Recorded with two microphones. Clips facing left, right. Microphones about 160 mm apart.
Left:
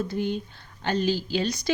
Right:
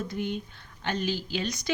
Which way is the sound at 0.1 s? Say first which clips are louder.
Left 4 dB; 35° left (ahead or behind).